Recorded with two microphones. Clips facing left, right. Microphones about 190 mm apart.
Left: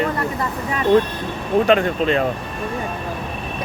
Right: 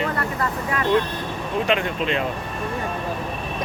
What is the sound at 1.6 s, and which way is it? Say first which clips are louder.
Speech: left 5 dB; 40° left (ahead or behind).